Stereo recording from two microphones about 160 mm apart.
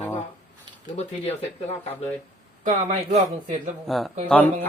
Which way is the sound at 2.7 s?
50° right (ahead or behind).